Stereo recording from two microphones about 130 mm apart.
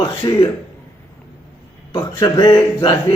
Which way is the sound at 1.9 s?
30° left (ahead or behind).